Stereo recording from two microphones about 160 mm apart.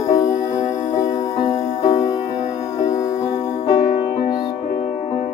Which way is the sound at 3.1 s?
45° left (ahead or behind).